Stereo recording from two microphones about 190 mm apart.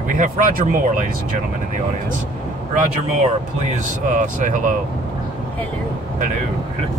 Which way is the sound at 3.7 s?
40° right (ahead or behind).